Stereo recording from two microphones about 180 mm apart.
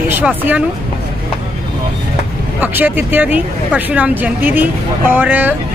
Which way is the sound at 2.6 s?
10° right (ahead or behind).